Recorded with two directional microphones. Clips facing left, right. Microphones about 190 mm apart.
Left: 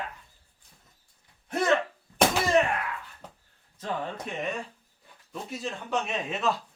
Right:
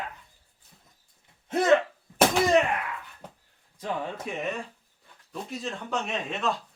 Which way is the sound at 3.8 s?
5° right (ahead or behind).